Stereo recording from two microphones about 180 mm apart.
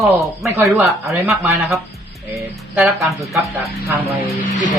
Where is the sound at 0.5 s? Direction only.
15° right (ahead or behind).